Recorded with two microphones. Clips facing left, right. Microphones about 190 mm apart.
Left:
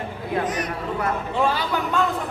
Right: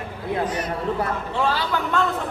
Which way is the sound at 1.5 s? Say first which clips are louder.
Even; 15° left (ahead or behind).